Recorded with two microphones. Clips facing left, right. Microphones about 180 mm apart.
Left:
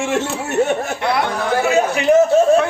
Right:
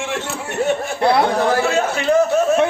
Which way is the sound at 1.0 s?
30° right (ahead or behind).